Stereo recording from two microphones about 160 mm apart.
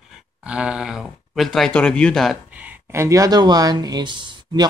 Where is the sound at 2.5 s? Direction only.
15° right (ahead or behind); by 4.6 s 30° right (ahead or behind).